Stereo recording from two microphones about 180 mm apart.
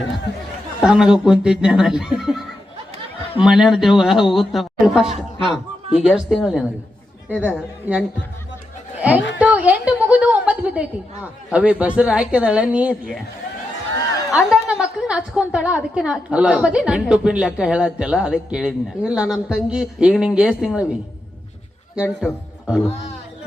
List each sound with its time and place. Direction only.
0.8 s a woman's voice: 5° right (ahead or behind)
3.4 s a woman's voice: centre (ahead or behind)
5.0 s a man's voice: 30° right (ahead or behind)
5.9 s a woman's voice: 5° right (ahead or behind)
9.0 s a woman's voice: 5° right (ahead or behind)
14.3 s a woman's voice: 5° right (ahead or behind)